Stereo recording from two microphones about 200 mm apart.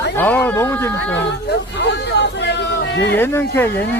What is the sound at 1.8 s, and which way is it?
Speech, 60° left (ahead or behind).